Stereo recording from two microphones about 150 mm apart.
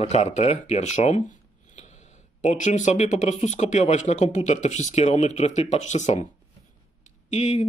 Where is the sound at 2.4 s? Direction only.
55° left (ahead or behind).